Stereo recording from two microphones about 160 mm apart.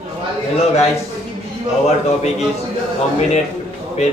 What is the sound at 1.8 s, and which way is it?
Speech, 45° left (ahead or behind).